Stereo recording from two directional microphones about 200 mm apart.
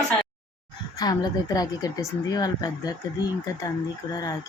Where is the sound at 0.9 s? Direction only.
20° left (ahead or behind).